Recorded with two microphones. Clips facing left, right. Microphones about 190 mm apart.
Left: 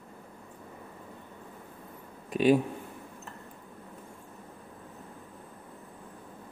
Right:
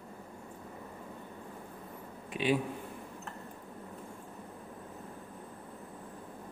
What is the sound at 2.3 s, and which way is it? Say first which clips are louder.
Speech: left 7 dB; 45° left (ahead or behind).